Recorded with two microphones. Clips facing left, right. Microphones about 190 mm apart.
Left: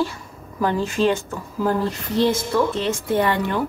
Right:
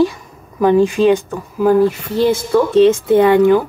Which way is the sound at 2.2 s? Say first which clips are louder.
Right 5 dB; 15° right (ahead or behind).